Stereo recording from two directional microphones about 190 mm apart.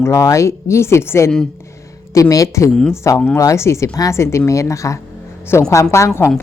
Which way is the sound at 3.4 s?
15° left (ahead or behind).